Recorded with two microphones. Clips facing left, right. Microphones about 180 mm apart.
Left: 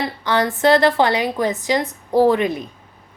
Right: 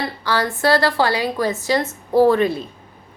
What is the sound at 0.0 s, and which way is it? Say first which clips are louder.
A woman's voice: left 2 dB; 20° left (ahead or behind).